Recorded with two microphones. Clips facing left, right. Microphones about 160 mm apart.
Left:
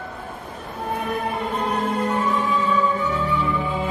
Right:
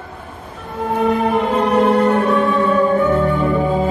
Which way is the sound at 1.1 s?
85° right.